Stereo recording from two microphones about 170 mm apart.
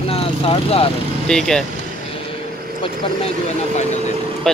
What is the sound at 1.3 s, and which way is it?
Speech, 5° left (ahead or behind).